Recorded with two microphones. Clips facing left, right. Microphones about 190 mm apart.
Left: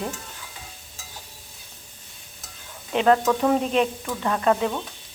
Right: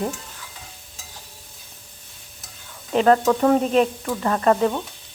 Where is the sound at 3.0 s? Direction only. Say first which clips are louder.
Right 2 dB; centre (ahead or behind).